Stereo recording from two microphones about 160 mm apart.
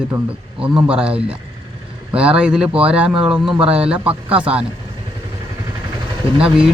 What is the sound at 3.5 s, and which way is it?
Speech, 35° right (ahead or behind).